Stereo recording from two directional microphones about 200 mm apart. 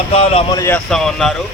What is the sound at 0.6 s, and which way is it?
Speech, 5° left (ahead or behind).